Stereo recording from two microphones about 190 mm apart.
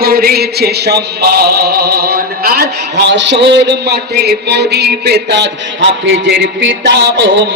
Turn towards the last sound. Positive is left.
turn(degrees=-65)  # may be behind; listen again after turning